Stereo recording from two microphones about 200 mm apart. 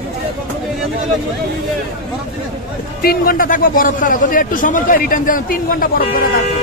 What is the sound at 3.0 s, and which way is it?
A man's voice, 50° left (ahead or behind).